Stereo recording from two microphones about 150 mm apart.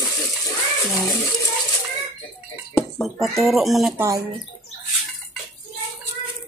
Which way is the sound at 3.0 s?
Centre (ahead or behind).